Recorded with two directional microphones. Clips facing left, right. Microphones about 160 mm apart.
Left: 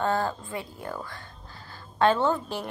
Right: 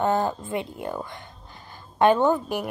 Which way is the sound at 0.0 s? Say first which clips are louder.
Right 3 dB; 20° right (ahead or behind).